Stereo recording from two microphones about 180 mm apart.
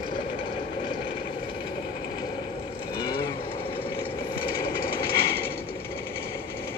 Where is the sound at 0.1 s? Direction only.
30° left (ahead or behind).